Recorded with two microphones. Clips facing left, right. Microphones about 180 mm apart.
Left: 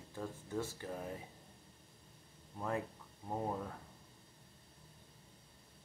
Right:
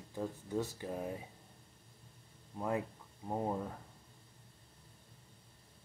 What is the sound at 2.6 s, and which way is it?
Speech, 15° right (ahead or behind).